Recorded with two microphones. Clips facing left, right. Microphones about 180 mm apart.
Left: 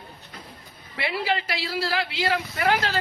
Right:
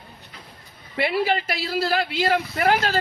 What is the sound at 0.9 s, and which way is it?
Speech, 50° right (ahead or behind).